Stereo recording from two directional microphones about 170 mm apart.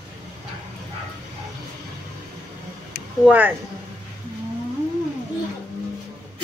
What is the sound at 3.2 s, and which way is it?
Speech, 10° right (ahead or behind).